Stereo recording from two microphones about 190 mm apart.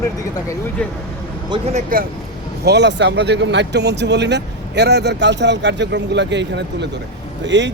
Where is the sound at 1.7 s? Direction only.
50° right (ahead or behind).